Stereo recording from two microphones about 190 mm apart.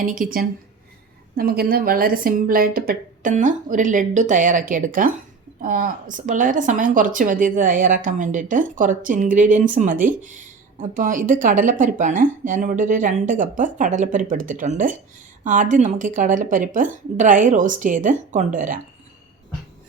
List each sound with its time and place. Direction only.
0.0 s a woman's voice: 45° right (ahead or behind)